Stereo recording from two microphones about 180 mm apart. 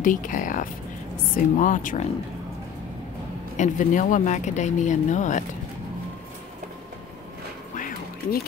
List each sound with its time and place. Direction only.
0.0 s speech: 45° left (ahead or behind)
3.5 s speech: 45° left (ahead or behind)
7.7 s music: 50° left (ahead or behind)